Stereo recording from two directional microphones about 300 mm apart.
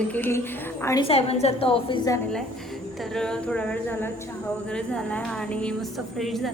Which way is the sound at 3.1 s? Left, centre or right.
Centre.